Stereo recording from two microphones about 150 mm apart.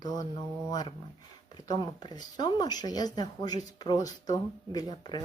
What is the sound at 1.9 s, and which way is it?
Speech, 30° left (ahead or behind).